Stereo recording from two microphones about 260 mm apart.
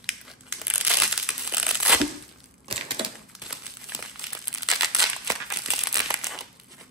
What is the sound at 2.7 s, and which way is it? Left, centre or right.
Crushing, centre.